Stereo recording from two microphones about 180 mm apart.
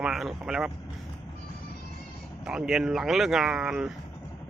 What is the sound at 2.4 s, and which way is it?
Speech, 5° right (ahead or behind).